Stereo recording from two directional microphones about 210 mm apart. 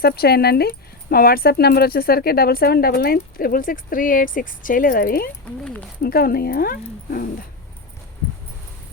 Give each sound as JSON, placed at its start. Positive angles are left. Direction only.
{"t": 0.0, "sound": "speech", "side_deg": 50}